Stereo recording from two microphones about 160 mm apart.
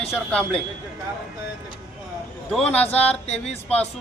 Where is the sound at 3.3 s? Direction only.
40° left (ahead or behind).